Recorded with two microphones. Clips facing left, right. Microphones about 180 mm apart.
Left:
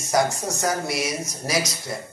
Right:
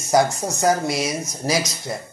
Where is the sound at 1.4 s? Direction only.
20° right (ahead or behind).